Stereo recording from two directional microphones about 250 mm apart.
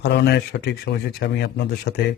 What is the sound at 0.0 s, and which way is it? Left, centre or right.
A man's voice, left.